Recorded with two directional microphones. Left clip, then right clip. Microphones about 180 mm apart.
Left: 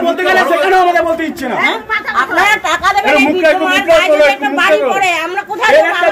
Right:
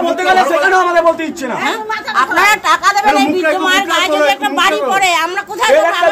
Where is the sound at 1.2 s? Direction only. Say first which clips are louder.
Left 2 dB; 30° right (ahead or behind).